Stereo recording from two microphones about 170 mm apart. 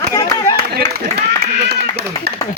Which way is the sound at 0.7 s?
70° right (ahead or behind).